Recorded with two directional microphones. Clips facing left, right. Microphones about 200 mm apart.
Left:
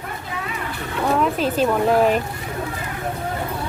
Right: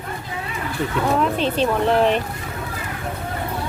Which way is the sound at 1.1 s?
5° left (ahead or behind).